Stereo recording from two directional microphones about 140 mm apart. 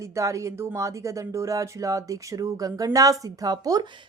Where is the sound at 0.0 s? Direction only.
20° right (ahead or behind).